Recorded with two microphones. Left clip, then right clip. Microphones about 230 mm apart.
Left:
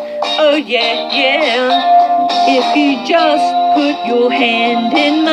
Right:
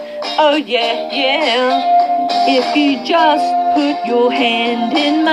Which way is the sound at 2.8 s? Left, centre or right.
Left.